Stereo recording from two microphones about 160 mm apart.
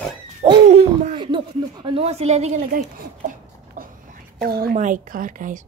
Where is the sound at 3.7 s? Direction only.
65° right (ahead or behind).